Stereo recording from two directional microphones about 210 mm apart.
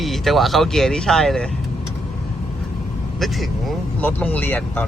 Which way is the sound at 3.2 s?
Centre (ahead or behind).